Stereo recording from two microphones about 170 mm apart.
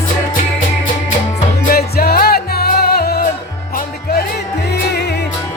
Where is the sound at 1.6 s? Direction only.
65° left (ahead or behind).